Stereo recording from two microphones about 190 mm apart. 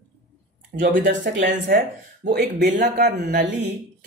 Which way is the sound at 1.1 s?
75° right (ahead or behind).